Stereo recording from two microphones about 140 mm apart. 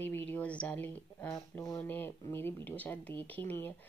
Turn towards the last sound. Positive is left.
turn(degrees=15)  # may be behind; listen again after turning